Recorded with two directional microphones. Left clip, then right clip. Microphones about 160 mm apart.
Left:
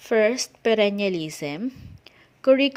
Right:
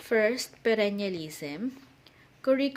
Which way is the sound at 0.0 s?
40° left (ahead or behind).